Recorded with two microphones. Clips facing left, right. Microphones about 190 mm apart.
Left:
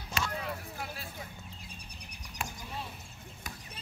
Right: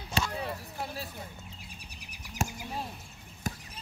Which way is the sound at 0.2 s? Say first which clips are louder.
Right 4 dB; 35° right (ahead or behind).